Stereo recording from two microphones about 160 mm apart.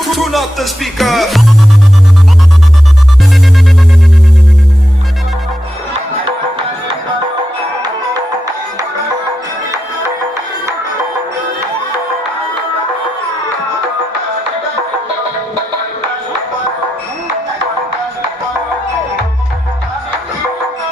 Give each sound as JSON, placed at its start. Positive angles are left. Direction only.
{"t": 0.0, "sound": "music", "side_deg": 0}
{"t": 9.7, "sound": "music", "side_deg": -20}